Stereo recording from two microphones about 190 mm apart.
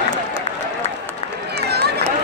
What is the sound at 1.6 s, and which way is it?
Run, 60° right (ahead or behind).